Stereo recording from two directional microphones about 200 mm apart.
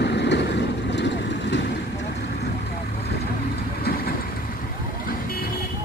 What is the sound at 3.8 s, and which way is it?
Vehicle, 50° left (ahead or behind).